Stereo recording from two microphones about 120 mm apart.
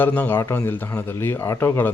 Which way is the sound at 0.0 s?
15° left (ahead or behind).